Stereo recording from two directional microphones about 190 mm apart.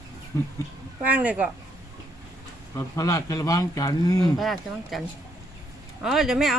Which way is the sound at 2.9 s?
15° left (ahead or behind).